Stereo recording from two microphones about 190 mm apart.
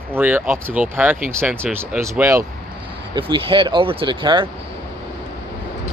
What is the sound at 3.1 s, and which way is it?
Speech, 25° right (ahead or behind).